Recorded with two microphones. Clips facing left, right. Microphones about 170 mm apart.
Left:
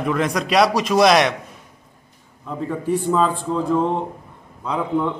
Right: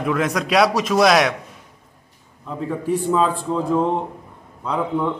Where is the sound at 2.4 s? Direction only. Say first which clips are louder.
Even; centre (ahead or behind).